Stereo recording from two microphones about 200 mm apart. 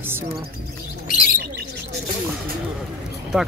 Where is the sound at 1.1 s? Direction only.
45° left (ahead or behind).